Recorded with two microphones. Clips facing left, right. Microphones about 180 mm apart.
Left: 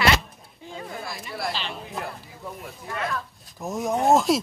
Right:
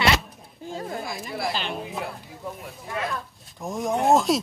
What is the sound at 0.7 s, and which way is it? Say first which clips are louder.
Speech: right 4 dB; 45° right (ahead or behind).